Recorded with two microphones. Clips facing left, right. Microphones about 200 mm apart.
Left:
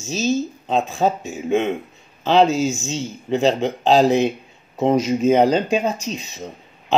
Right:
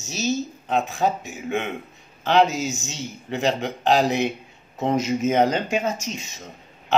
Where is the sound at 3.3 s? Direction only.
20° left (ahead or behind).